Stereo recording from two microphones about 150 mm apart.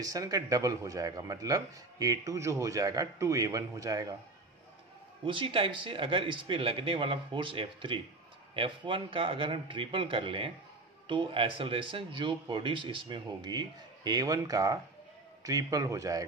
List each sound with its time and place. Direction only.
0.0 s speech: 25° right (ahead or behind)
5.2 s speech: 35° right (ahead or behind)